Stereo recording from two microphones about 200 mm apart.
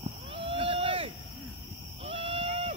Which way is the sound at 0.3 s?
25° right (ahead or behind).